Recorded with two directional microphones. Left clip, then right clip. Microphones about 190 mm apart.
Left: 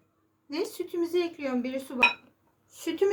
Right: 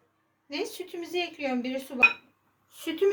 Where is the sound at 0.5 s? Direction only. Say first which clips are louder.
Left 2 dB; 55° left (ahead or behind).